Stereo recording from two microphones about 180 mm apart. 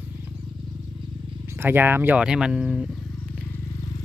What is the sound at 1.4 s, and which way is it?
Speech, 15° right (ahead or behind).